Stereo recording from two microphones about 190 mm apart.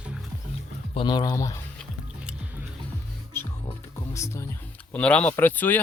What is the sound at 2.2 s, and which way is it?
Music, 5° right (ahead or behind).